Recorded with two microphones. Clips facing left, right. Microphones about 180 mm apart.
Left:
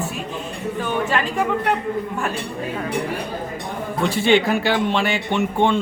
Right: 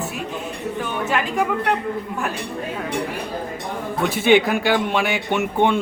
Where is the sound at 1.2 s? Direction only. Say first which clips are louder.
Left 1 dB; 10° right (ahead or behind).